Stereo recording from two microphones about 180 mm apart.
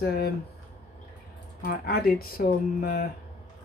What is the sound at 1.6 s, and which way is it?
Speech, 55° left (ahead or behind).